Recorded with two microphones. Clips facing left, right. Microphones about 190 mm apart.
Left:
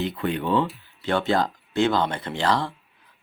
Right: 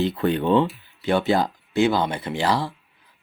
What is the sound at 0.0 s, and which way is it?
Speech, 35° right (ahead or behind).